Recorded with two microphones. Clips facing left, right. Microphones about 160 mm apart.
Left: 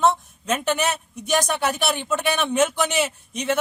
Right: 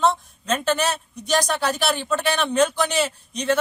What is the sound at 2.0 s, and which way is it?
Speech, 15° left (ahead or behind).